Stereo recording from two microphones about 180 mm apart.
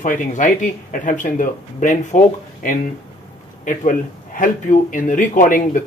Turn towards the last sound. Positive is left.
turn(degrees=45)  # may be behind; listen again after turning